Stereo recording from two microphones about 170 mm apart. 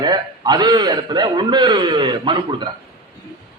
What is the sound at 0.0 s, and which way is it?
A man's voice, 25° right (ahead or behind).